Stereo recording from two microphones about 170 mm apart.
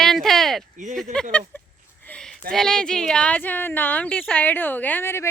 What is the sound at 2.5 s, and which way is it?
Speech, 5° left (ahead or behind).